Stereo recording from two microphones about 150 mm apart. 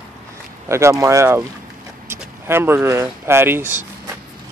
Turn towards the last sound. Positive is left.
turn(degrees=-15)  # may be behind; listen again after turning